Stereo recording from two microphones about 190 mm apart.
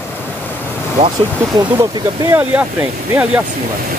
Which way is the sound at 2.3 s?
5° right (ahead or behind).